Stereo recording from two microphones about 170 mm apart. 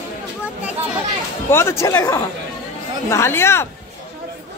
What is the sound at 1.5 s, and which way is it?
Speech, 15° left (ahead or behind).